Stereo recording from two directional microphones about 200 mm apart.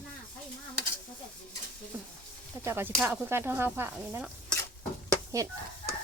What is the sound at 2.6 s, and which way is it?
Speech, 10° right (ahead or behind).